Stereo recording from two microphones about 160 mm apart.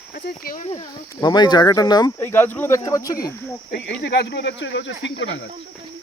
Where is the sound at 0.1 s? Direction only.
65° left (ahead or behind).